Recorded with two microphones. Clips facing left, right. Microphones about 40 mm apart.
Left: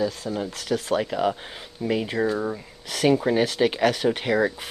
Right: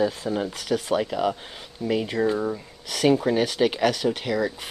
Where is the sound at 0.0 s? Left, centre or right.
Right.